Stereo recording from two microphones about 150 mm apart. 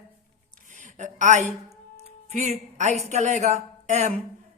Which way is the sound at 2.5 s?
55° right (ahead or behind).